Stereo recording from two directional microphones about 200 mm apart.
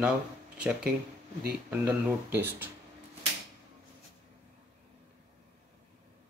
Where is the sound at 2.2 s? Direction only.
10° right (ahead or behind).